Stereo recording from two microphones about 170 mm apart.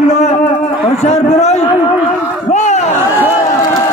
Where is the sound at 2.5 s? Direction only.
45° left (ahead or behind).